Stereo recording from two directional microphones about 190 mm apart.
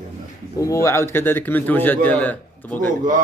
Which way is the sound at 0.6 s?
15° left (ahead or behind).